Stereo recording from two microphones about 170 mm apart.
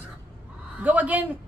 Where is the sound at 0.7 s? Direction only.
10° right (ahead or behind).